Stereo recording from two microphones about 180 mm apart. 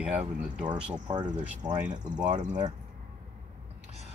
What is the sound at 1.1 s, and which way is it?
Speech, 25° right (ahead or behind).